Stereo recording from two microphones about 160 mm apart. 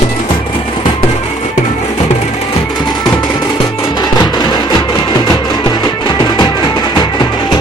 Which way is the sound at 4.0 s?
25° left (ahead or behind).